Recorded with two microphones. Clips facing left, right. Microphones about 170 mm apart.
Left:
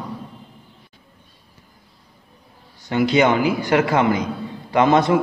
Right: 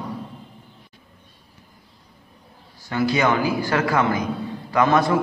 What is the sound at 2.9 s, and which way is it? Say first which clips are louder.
A man's voice: left 4 dB; 20° left (ahead or behind).